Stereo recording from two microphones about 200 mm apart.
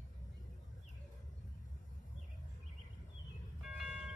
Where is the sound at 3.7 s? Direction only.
5° right (ahead or behind).